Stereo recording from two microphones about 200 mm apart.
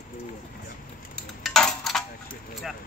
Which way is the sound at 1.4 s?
Centre (ahead or behind).